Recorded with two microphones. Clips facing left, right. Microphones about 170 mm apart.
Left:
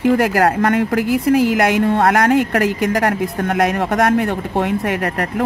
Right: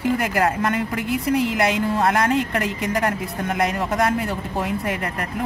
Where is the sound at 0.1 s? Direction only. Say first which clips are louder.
Left 5 dB; 70° left (ahead or behind).